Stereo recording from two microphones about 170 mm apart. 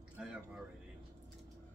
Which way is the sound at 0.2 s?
5° right (ahead or behind).